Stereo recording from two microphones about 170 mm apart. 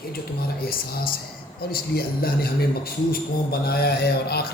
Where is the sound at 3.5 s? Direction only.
65° left (ahead or behind).